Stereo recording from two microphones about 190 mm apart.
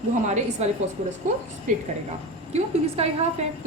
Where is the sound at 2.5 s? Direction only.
35° right (ahead or behind).